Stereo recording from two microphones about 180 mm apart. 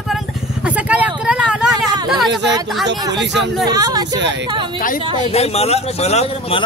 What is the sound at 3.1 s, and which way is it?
Speech, 80° right.